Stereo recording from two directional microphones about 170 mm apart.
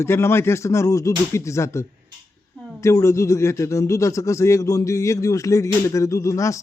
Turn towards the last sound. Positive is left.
turn(degrees=20)  # may be behind; listen again after turning